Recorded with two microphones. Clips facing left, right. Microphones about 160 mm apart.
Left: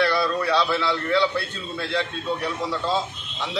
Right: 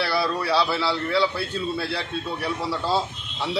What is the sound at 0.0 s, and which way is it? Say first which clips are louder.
A man's voice: left 2 dB; 10° right (ahead or behind).